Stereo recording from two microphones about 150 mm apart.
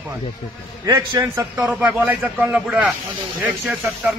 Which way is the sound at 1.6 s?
5° right (ahead or behind).